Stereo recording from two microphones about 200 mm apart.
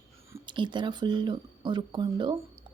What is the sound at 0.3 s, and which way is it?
A woman's voice, 25° right (ahead or behind).